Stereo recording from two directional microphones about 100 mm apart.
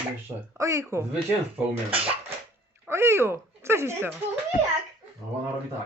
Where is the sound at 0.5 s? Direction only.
30° right (ahead or behind).